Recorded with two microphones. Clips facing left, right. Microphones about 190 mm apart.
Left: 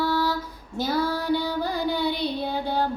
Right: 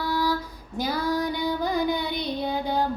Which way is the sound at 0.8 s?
15° right (ahead or behind).